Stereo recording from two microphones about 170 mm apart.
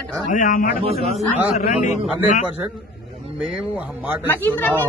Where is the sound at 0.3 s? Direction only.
50° left (ahead or behind).